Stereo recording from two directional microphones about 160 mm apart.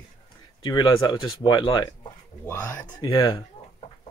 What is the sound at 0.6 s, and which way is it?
Speech, 30° left (ahead or behind).